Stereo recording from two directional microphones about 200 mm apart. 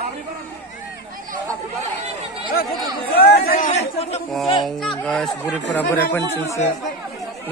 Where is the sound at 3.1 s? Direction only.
50° left (ahead or behind).